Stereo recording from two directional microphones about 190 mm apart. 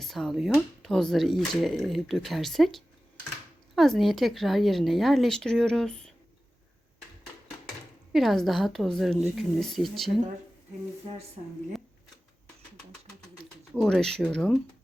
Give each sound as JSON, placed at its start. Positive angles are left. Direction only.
{"t": 0.0, "sound": "speech", "side_deg": 0}
{"t": 8.1, "sound": "speech", "side_deg": 0}
{"t": 11.1, "sound": "speech", "side_deg": -30}
{"t": 13.4, "sound": "speech", "side_deg": 5}